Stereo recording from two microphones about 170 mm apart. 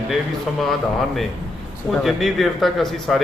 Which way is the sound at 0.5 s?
Centre (ahead or behind).